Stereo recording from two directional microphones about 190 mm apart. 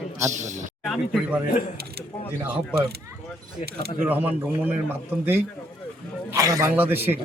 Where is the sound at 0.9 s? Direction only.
Centre (ahead or behind).